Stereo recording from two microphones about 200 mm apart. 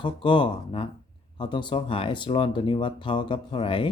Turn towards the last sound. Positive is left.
turn(degrees=25)  # may be behind; listen again after turning